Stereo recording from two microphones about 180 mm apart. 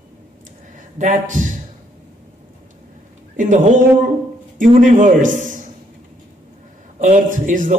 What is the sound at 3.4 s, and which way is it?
Speech, 45° right (ahead or behind).